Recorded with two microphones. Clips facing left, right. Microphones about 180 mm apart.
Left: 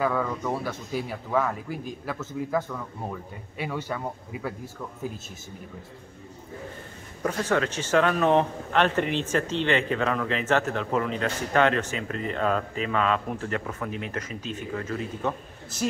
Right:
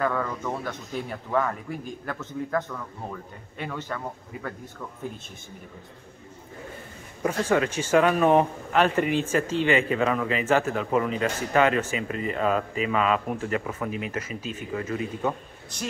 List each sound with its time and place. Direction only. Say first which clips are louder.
0.0 s a man's voice: left 1 dB; 5° left (ahead or behind)
7.2 s speech: right 2 dB; 10° right (ahead or behind)
15.7 s speech: left 6 dB; 5° left (ahead or behind)